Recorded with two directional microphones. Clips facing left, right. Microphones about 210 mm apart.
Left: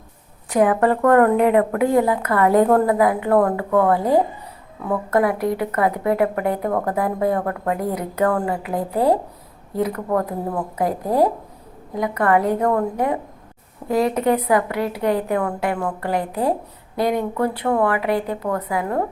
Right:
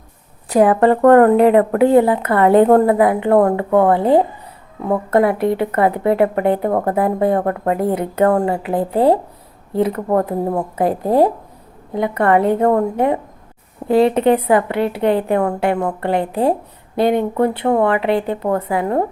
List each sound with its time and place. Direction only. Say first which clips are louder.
0.5 s speech: right 4 dB; 35° right (ahead or behind)